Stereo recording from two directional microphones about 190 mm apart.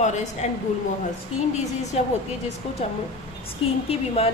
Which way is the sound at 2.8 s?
35° left (ahead or behind).